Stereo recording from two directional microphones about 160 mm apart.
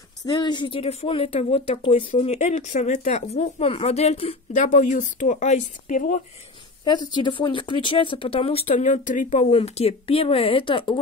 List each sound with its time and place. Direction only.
0.3 s speech: 30° left (ahead or behind)
4.6 s speech: 50° left (ahead or behind)
6.8 s speech: 25° left (ahead or behind)